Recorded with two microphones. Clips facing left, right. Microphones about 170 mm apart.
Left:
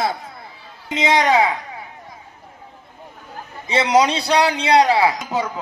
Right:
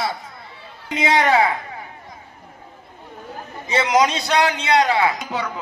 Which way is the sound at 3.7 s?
30° left (ahead or behind).